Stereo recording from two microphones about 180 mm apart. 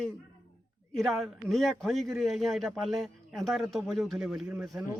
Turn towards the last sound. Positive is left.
turn(degrees=0)  # may be behind; listen again after turning